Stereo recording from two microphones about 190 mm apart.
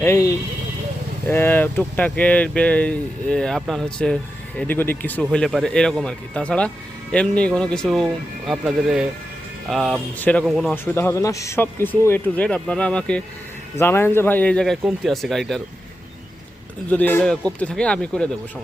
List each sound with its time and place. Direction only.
0.0 s a man's voice: 15° left (ahead or behind)
16.9 s a man's voice: 10° left (ahead or behind)